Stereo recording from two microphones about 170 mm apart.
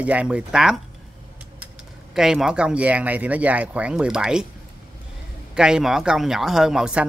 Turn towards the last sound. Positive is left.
turn(degrees=-5)  # may be behind; listen again after turning